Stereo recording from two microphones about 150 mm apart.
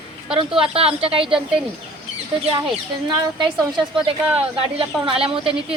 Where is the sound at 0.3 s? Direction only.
40° right (ahead or behind).